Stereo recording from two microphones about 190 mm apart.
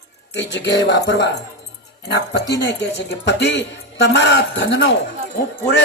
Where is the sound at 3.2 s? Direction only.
65° left (ahead or behind).